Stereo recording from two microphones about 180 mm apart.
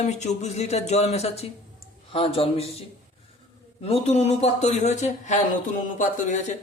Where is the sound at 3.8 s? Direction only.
35° left (ahead or behind).